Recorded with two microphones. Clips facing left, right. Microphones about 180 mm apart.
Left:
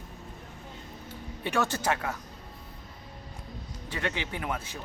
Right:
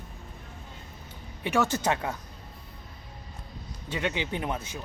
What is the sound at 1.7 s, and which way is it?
Speech, 25° right (ahead or behind).